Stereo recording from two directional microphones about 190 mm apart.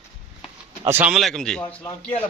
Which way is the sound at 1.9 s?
25° left (ahead or behind).